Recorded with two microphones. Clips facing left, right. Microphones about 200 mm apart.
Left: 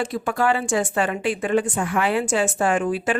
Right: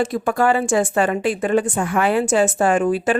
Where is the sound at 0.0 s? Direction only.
45° right (ahead or behind).